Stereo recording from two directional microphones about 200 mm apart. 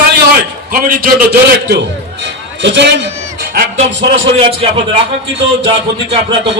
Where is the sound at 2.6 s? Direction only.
60° right (ahead or behind).